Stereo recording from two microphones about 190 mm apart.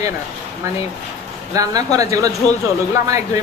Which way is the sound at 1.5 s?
20° right (ahead or behind).